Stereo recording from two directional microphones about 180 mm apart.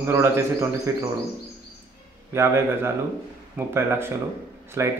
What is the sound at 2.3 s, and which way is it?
A man's voice, 15° right (ahead or behind).